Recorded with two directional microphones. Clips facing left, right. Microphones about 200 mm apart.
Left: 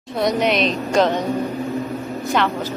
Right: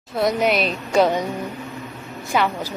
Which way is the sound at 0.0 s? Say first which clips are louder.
Left 1 dB; 5° right (ahead or behind).